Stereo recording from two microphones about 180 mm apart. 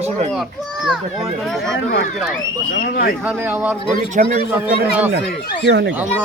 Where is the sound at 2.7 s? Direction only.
55° left (ahead or behind).